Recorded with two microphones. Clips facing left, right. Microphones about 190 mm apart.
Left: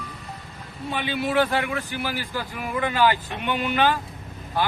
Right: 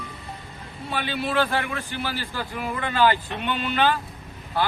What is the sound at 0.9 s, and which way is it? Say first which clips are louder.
A man's voice: left 2 dB; 15° left (ahead or behind).